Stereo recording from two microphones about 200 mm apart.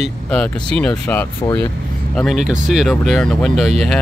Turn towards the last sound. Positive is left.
turn(degrees=0)  # may be behind; listen again after turning